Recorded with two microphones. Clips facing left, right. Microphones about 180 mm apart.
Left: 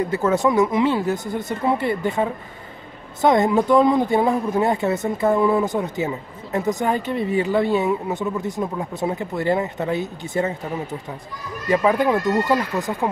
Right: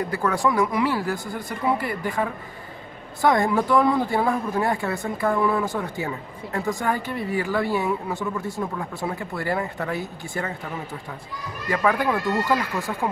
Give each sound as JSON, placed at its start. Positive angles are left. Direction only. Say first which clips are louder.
{"t": 0.0, "sound": "speech", "louder": "left 4 dB", "side_deg": 20}